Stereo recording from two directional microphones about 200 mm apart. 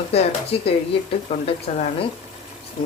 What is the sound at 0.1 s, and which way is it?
A woman's voice, 30° left (ahead or behind).